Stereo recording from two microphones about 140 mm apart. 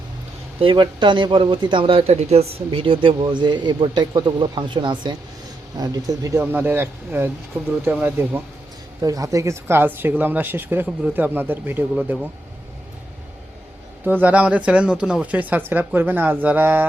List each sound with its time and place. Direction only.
0.6 s speech: 35° right (ahead or behind); by 8.4 s 10° right (ahead or behind)
9.0 s speech: 25° right (ahead or behind)
14.0 s speech: 15° right (ahead or behind)